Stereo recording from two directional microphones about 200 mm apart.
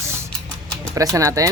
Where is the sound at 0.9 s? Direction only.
15° right (ahead or behind).